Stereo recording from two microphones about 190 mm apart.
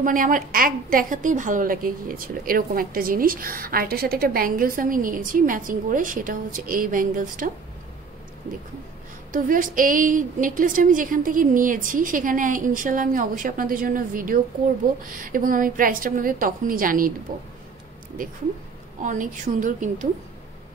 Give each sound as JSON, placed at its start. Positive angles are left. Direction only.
{"t": 0.0, "sound": "a woman's voice", "side_deg": -45}
{"t": 9.3, "sound": "a woman's voice", "side_deg": -45}
{"t": 19.0, "sound": "a woman's voice", "side_deg": -40}